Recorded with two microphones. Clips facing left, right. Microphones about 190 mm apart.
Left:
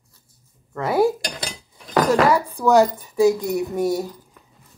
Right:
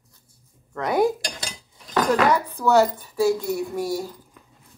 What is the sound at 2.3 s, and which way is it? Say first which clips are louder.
Speech: left 3 dB; 10° left (ahead or behind).